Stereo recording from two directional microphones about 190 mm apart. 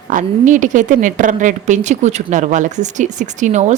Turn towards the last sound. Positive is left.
turn(degrees=-40)  # may be behind; listen again after turning